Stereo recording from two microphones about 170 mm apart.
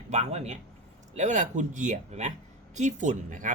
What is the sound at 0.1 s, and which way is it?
A man's voice, 40° right (ahead or behind).